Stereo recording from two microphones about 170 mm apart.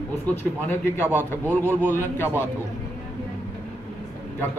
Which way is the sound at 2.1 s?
10° left (ahead or behind).